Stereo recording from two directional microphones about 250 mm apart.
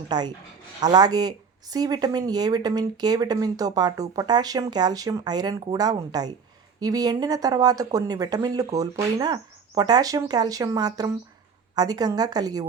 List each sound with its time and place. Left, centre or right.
0.1 s speech: centre